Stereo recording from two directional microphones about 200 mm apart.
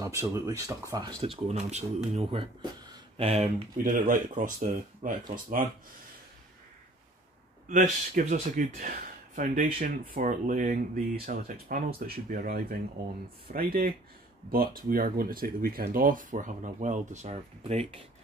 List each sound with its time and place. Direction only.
0.0 s speech: 15° right (ahead or behind); by 3.6 s 30° right (ahead or behind)
3.7 s a man's voice: 40° right (ahead or behind)
7.6 s a man's voice: 40° right (ahead or behind)